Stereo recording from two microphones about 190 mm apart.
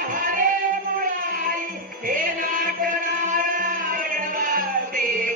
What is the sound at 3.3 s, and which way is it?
Music, 45° right (ahead or behind).